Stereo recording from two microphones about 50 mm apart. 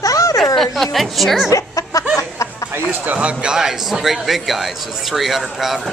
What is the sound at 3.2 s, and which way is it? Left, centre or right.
Speech, right.